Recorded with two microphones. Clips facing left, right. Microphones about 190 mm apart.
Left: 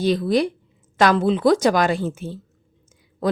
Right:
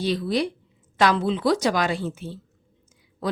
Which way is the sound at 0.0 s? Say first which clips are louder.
Left 5 dB; 45° left (ahead or behind).